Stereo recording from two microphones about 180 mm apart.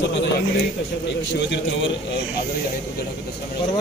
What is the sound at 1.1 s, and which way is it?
Speech, 75° left (ahead or behind).